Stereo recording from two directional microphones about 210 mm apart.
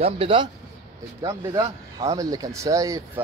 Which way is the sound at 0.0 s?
25° right (ahead or behind).